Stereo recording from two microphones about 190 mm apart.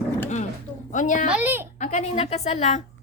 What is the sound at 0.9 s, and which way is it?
Speech, 40° left (ahead or behind).